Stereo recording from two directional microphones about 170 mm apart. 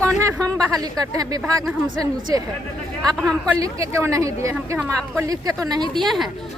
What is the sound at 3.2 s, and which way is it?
Speech, 5° left (ahead or behind).